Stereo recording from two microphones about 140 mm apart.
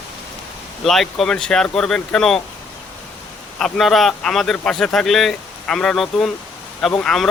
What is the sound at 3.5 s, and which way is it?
A man's voice, centre (ahead or behind).